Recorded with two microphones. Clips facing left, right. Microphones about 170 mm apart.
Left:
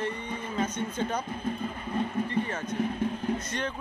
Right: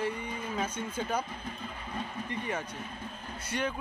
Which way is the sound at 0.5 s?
10° right (ahead or behind).